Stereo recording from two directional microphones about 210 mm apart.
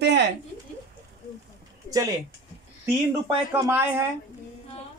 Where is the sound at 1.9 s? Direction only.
15° right (ahead or behind).